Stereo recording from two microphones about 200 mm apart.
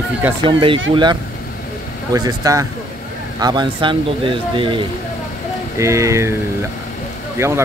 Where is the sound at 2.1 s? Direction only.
15° right (ahead or behind).